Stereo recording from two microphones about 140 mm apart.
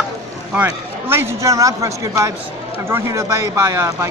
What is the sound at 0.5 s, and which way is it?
Speech, 15° right (ahead or behind).